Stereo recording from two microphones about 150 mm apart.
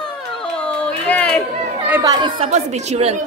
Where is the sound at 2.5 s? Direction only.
45° right (ahead or behind).